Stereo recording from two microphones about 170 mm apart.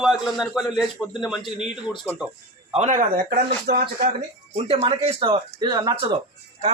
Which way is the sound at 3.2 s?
65° right (ahead or behind).